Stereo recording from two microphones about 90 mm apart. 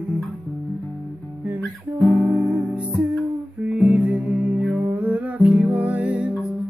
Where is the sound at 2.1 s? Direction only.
20° right (ahead or behind).